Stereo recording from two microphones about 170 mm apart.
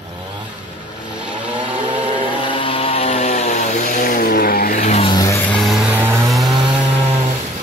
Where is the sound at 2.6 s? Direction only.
35° left (ahead or behind); by 4.8 s 60° left (ahead or behind).